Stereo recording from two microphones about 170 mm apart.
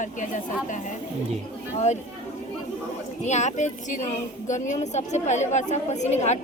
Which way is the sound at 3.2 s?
45° left (ahead or behind).